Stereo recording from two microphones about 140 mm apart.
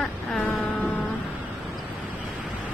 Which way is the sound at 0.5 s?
10° left (ahead or behind).